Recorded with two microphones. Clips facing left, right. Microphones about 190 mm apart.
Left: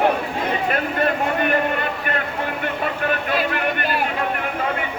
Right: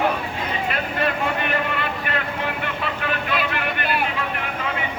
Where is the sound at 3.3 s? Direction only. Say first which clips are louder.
Left 3 dB; 45° left (ahead or behind).